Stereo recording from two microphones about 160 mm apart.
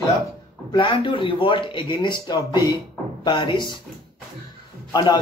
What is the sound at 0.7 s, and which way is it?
A man's voice, 30° left (ahead or behind).